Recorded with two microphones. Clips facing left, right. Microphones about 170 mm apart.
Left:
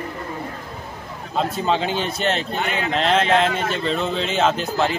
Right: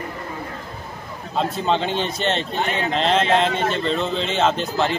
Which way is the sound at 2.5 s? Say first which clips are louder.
Right 1 dB; 35° right (ahead or behind).